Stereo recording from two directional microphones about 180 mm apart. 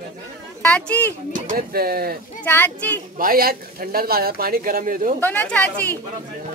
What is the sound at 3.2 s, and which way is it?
Speech, 55° right (ahead or behind).